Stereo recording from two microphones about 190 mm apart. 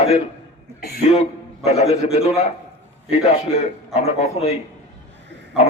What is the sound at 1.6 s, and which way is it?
Speech, 35° left (ahead or behind).